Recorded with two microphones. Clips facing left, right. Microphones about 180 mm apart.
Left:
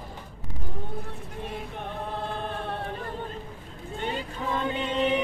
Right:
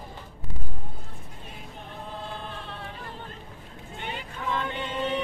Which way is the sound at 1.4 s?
65° left (ahead or behind).